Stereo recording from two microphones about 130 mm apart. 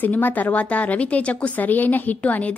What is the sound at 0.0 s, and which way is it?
A woman's voice, 15° left (ahead or behind).